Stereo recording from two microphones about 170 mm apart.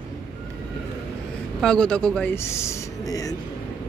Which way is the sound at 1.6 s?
5° left (ahead or behind).